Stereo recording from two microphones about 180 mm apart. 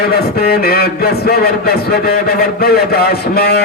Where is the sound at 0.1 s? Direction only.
60° left (ahead or behind).